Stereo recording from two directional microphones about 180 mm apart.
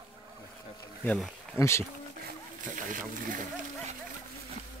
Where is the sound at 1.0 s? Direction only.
5° left (ahead or behind).